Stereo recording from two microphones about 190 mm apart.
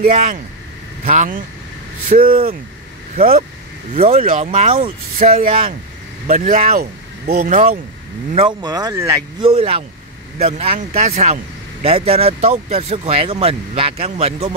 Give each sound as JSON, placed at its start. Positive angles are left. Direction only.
{"t": 1.0, "sound": "speech", "side_deg": -40}
{"t": 3.9, "sound": "speech", "side_deg": -30}
{"t": 4.2, "sound": "speech", "side_deg": -45}
{"t": 4.5, "sound": "speech", "side_deg": -30}
{"t": 5.2, "sound": "speech", "side_deg": -45}
{"t": 8.3, "sound": "speech", "side_deg": -30}
{"t": 8.5, "sound": "speech", "side_deg": -20}
{"t": 9.4, "sound": "speech", "side_deg": -30}